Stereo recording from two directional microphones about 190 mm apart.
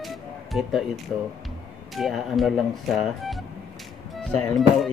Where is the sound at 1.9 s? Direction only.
Centre (ahead or behind).